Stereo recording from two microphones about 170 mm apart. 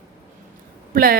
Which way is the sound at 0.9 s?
60° right (ahead or behind).